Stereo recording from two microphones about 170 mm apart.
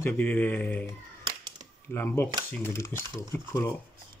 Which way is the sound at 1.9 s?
10° left (ahead or behind).